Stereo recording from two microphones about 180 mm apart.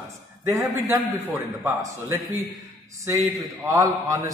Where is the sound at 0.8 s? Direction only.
15° right (ahead or behind).